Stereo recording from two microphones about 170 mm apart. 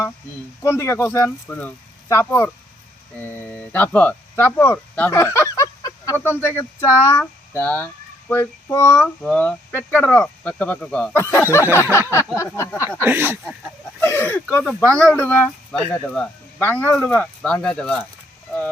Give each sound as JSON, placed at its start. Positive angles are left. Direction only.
{"t": 0.6, "sound": "speech", "side_deg": 15}
{"t": 13.0, "sound": "speech", "side_deg": -10}
{"t": 14.0, "sound": "speech", "side_deg": 15}